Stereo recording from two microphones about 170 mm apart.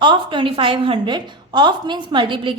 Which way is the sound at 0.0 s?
25° right (ahead or behind).